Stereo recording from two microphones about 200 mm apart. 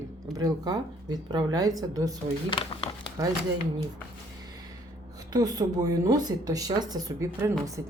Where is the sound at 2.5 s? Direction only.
25° left (ahead or behind).